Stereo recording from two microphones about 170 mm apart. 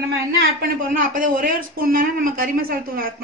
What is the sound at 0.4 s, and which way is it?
A woman's voice, 60° right (ahead or behind).